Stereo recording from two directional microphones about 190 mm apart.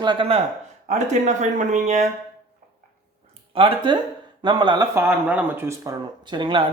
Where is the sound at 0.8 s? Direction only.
40° right (ahead or behind).